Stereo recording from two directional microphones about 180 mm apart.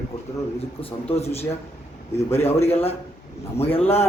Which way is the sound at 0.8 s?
35° left (ahead or behind).